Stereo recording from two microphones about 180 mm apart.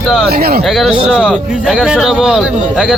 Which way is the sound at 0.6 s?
Centre (ahead or behind).